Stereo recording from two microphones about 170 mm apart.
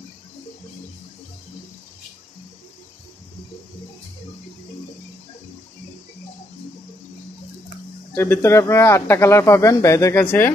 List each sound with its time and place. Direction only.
8.1 s speech: 15° left (ahead or behind)